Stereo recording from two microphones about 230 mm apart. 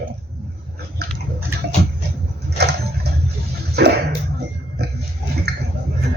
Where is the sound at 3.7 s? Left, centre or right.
Right.